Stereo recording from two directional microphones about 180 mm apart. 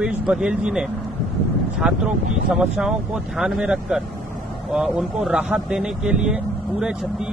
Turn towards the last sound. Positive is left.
turn(degrees=-5)  # may be behind; listen again after turning